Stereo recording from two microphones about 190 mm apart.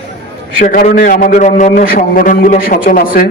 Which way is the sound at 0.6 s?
45° left (ahead or behind).